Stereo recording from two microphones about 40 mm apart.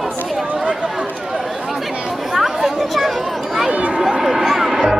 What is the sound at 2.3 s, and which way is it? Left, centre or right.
Chatter, centre.